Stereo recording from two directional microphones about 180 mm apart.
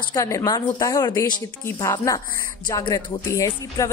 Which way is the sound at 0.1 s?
15° left (ahead or behind).